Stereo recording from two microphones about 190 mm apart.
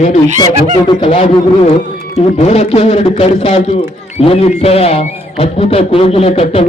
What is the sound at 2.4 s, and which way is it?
A man's voice, 35° left (ahead or behind).